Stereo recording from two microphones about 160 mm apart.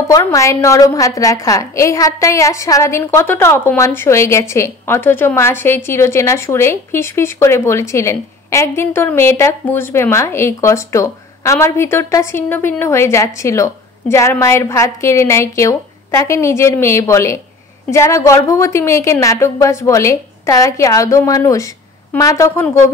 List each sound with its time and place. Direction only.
0.1 s a woman's voice: 20° left (ahead or behind)